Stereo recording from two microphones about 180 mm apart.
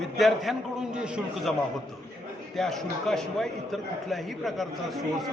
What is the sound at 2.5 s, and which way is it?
Speech, centre (ahead or behind).